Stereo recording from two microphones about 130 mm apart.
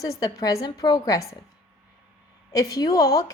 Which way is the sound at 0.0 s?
25° left (ahead or behind).